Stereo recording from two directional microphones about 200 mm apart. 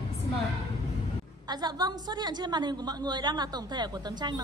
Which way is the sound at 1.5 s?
20° right (ahead or behind).